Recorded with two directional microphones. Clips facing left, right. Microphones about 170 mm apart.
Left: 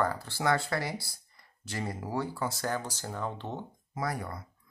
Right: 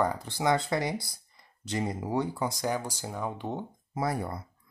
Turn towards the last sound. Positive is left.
turn(degrees=-25)  # may be behind; listen again after turning